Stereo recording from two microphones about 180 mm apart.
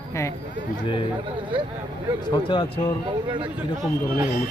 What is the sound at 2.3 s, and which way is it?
Speech, 30° left (ahead or behind).